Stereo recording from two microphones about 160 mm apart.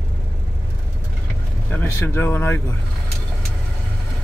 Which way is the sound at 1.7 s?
10° left (ahead or behind).